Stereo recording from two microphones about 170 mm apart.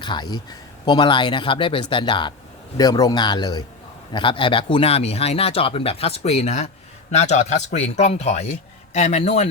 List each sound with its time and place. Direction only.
0.0 s speech: 25° left (ahead or behind)